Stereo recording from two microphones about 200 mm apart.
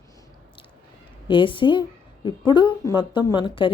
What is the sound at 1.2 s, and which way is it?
A woman's voice, 25° left (ahead or behind).